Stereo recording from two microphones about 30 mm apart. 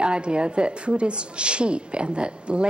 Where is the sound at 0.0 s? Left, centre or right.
Right.